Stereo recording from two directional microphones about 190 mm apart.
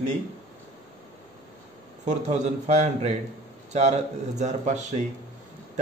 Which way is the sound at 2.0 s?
35° right (ahead or behind).